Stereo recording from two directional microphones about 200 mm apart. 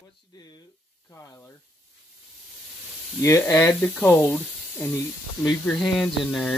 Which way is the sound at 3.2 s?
15° left (ahead or behind).